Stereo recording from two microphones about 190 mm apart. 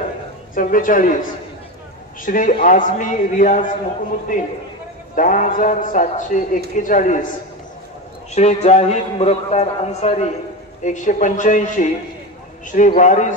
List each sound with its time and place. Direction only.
0.6 s a man's voice: 45° left (ahead or behind)
2.2 s a man's voice: 45° left (ahead or behind)